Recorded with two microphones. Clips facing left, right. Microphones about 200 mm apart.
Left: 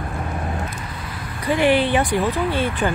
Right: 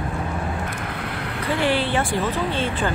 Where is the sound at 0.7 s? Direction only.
65° right (ahead or behind).